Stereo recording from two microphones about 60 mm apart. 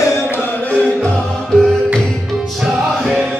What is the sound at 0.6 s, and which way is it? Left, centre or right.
Music, centre.